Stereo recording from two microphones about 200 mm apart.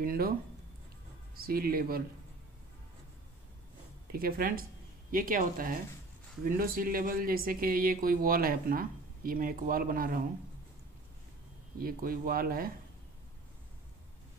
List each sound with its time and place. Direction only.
0.0 s speech: 45° right (ahead or behind)
1.3 s speech: 50° right (ahead or behind)
4.1 s speech: 45° right (ahead or behind)
11.8 s speech: 45° right (ahead or behind)